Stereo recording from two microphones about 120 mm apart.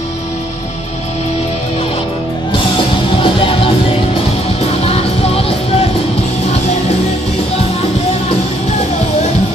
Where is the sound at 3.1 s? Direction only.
45° left (ahead or behind).